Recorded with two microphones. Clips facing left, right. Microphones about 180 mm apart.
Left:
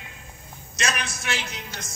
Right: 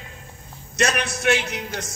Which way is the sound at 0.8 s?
60° right (ahead or behind).